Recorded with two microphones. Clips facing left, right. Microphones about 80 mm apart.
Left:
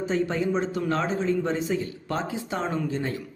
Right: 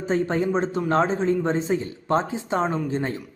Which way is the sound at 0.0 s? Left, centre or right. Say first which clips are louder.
Right 3 dB; right.